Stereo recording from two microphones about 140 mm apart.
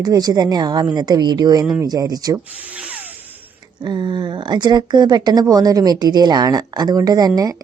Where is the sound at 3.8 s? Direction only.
30° right (ahead or behind).